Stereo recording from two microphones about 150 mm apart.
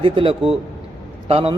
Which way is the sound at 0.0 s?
35° right (ahead or behind).